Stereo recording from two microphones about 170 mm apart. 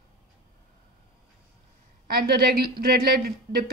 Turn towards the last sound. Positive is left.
turn(degrees=-65)  # may be behind; listen again after turning